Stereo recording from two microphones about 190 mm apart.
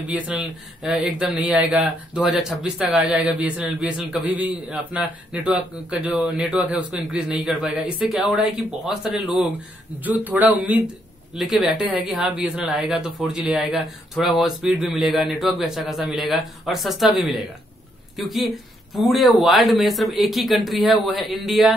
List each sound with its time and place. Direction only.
0.0 s speech: 5° right (ahead or behind)